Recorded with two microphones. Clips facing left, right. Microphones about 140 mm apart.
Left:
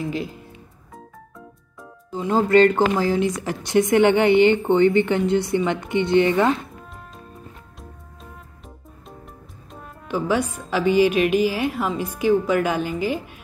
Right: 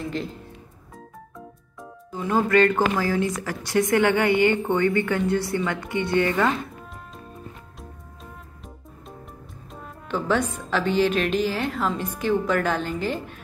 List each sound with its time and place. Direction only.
0.0 s speech: 5° left (ahead or behind)
2.0 s a woman's voice: 25° left (ahead or behind)
9.7 s a woman's voice: 5° left (ahead or behind)